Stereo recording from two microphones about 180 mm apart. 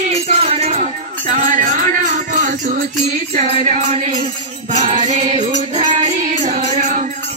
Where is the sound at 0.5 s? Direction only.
35° right (ahead or behind).